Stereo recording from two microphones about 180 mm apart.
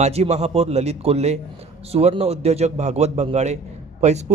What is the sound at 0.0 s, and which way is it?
A man's voice, 35° right (ahead or behind).